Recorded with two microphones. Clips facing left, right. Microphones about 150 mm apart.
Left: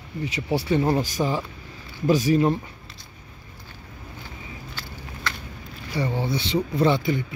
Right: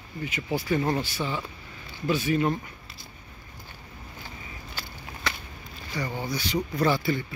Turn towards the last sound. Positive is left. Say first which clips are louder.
# left 4 dB
turn(degrees=20)  # may be behind; listen again after turning